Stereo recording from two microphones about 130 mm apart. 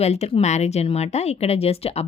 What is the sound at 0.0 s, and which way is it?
Speech, 55° left (ahead or behind).